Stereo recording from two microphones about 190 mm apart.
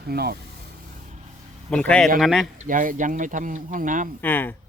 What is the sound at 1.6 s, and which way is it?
Speech, 5° left (ahead or behind).